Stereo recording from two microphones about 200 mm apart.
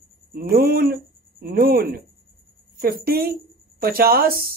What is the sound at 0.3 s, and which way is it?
Speech, 50° right (ahead or behind).